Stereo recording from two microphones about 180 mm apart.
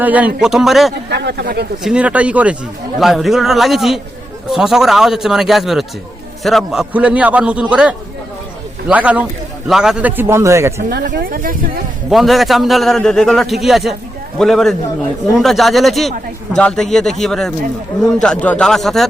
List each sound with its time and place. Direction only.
0.0 s a man's voice: 10° right (ahead or behind)
1.1 s speech: 65° right (ahead or behind)
1.8 s a man's voice: 5° right (ahead or behind)
10.8 s speech: 65° right (ahead or behind)
12.1 s a man's voice: centre (ahead or behind)